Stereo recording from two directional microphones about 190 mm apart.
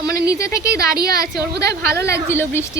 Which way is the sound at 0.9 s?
55° right (ahead or behind).